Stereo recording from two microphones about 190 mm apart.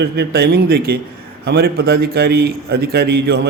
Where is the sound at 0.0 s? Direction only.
60° right (ahead or behind).